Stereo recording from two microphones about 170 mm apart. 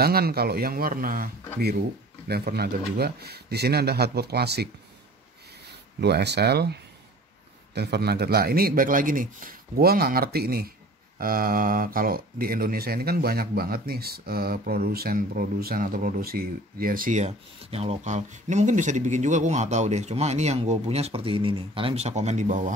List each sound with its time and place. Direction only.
0.0 s speech: 65° right (ahead or behind)
5.9 s speech: 75° right (ahead or behind); by 22.7 s 45° right (ahead or behind)